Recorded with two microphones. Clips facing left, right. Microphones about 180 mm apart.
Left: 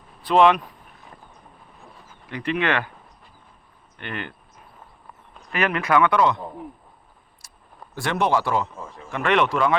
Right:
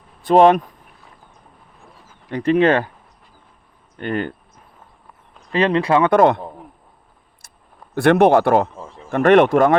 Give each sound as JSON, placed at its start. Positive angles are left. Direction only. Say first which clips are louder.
{"t": 0.2, "sound": "speech", "louder": "right 5 dB", "side_deg": -45}
{"t": 2.3, "sound": "speech", "louder": "right 9 dB", "side_deg": -40}
{"t": 3.9, "sound": "speech", "louder": "right 10 dB", "side_deg": -40}
{"t": 5.5, "sound": "speech", "louder": "right 6 dB", "side_deg": -30}
{"t": 6.1, "sound": "speech", "louder": "right 7 dB", "side_deg": -50}
{"t": 7.4, "sound": "a sound", "louder": "right 2 dB", "side_deg": -55}
{"t": 7.9, "sound": "speech", "louder": "right 10 dB", "side_deg": -60}